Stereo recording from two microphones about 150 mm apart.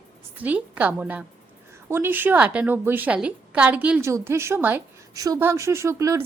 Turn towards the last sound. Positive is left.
turn(degrees=-20)  # may be behind; listen again after turning